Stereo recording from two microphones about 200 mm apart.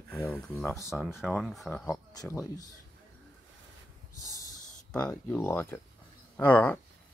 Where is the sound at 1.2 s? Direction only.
Centre (ahead or behind); by 2.7 s 15° left (ahead or behind).